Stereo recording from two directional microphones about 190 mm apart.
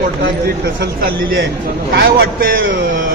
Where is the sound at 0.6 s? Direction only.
60° right (ahead or behind).